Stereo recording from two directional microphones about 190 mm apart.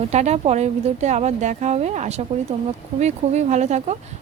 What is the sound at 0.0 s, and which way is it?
Speech, 35° right (ahead or behind).